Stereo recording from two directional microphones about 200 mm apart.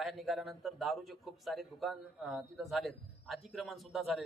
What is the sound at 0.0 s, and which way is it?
A man's voice, centre (ahead or behind).